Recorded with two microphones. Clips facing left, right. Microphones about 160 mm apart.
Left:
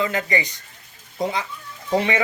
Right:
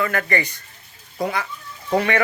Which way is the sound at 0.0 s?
20° left (ahead or behind).